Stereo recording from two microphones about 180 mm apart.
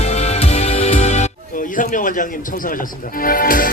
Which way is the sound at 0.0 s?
40° left (ahead or behind).